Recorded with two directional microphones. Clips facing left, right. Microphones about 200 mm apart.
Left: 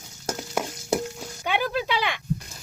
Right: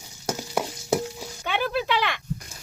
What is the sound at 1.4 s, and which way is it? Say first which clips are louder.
Speech: even; 15° left (ahead or behind).